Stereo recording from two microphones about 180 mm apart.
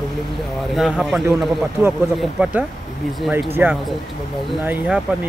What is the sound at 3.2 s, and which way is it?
Speech, 10° right (ahead or behind).